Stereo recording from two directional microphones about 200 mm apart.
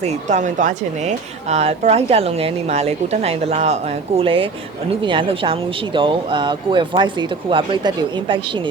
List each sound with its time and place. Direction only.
0.0 s speech: 35° right (ahead or behind)